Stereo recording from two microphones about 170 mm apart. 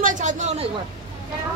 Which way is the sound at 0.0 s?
50° right (ahead or behind).